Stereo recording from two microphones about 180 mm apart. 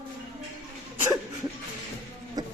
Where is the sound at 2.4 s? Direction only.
20° right (ahead or behind).